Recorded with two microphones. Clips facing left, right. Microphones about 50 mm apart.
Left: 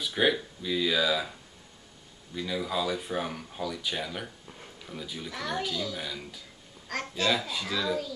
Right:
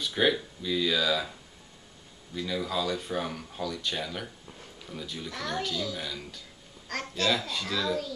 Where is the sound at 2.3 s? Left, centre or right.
Centre.